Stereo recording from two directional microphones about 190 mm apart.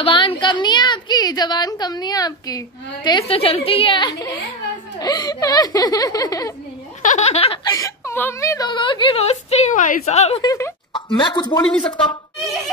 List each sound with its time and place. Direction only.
0.0 s a woman's voice: 25° left (ahead or behind)
7.0 s speech: 40° left (ahead or behind)
10.4 s speech: 20° left (ahead or behind)